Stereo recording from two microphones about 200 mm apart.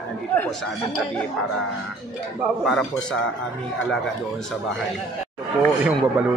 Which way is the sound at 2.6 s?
Centre (ahead or behind).